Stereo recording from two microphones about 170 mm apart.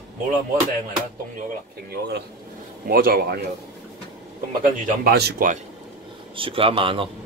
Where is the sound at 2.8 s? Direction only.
60° right (ahead or behind).